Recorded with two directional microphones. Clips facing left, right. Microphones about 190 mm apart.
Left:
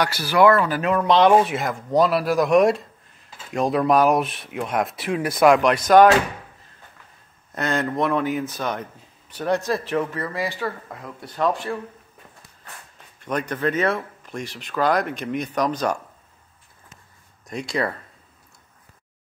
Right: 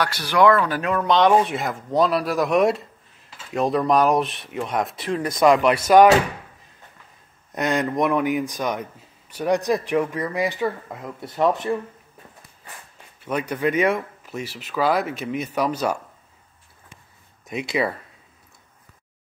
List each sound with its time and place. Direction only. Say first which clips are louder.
0.0 s speech: left 1 dB; 5° left (ahead or behind)
7.5 s speech: right 2 dB; 15° right (ahead or behind)
13.2 s speech: right 1 dB; 10° right (ahead or behind)
17.5 s speech: right 2 dB; 5° right (ahead or behind)